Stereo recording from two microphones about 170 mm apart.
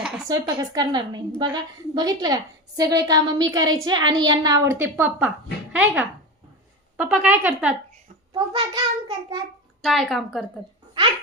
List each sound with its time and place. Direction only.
0.3 s a woman's voice: 25° right (ahead or behind); by 7.8 s 5° right (ahead or behind)
8.3 s a woman's voice: 25° right (ahead or behind)
9.8 s speech: centre (ahead or behind)